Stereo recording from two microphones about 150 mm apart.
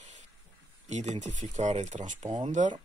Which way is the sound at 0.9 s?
50° right (ahead or behind).